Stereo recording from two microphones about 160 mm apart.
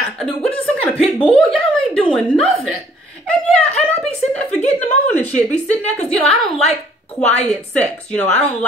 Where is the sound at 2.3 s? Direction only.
5° left (ahead or behind).